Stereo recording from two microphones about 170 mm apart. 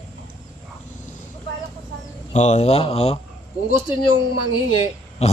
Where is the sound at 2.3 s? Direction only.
40° left (ahead or behind).